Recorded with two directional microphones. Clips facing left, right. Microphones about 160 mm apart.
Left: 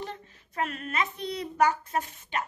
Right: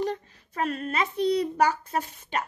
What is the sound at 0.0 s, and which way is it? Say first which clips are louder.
A child's voice: right 9 dB; 35° right (ahead or behind).